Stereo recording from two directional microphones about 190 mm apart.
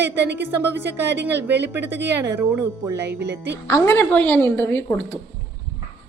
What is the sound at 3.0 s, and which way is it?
Speech, 60° right (ahead or behind).